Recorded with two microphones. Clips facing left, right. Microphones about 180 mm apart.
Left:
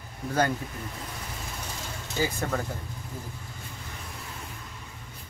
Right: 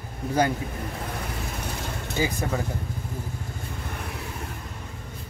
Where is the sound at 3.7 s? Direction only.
60° right (ahead or behind).